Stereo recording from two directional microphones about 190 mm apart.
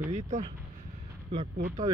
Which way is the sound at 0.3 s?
40° right (ahead or behind).